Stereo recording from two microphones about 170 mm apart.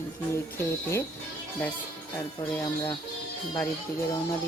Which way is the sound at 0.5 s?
15° left (ahead or behind).